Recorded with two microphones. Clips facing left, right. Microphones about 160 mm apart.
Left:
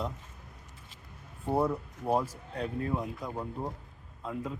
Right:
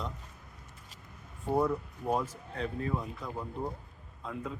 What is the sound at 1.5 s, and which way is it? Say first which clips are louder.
A man's voice: even; 10° left (ahead or behind).